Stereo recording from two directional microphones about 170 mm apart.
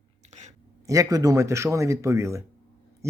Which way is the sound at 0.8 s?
20° right (ahead or behind).